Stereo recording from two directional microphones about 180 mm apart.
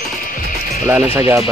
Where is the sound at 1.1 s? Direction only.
15° right (ahead or behind).